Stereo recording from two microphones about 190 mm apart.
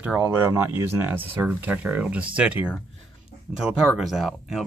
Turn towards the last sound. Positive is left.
turn(degrees=0)  # may be behind; listen again after turning